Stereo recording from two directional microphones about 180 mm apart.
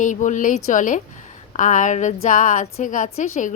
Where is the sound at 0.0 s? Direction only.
45° left (ahead or behind).